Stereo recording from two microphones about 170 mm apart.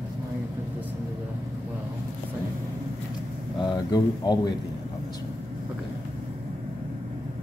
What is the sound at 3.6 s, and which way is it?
Speech, 25° left (ahead or behind).